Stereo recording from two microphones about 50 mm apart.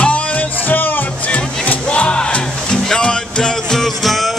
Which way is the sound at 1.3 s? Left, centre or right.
Left.